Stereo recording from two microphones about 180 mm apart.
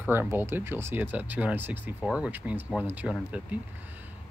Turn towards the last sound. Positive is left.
turn(degrees=-5)  # may be behind; listen again after turning